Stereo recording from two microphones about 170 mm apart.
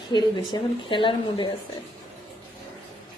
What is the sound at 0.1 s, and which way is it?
Speech, 25° left (ahead or behind).